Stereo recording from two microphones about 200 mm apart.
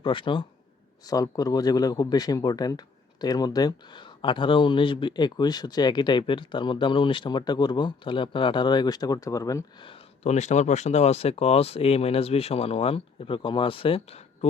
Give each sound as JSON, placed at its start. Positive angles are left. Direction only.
{"t": 0.0, "sound": "a man's voice", "side_deg": 25}